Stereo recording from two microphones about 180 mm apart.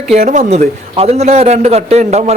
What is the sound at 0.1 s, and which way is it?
A man's voice, 40° right (ahead or behind).